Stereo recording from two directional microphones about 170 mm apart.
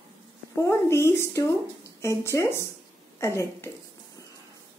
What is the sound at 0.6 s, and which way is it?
A woman's voice, 15° left (ahead or behind).